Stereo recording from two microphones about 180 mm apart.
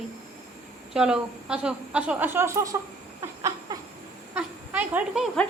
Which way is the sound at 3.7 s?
20° right (ahead or behind).